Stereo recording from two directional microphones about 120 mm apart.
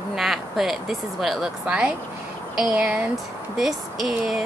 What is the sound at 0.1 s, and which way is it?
A woman's voice, centre (ahead or behind).